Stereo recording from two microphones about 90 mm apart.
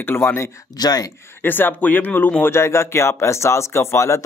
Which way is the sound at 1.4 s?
20° left (ahead or behind).